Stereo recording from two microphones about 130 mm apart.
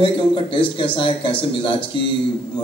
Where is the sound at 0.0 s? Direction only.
40° left (ahead or behind).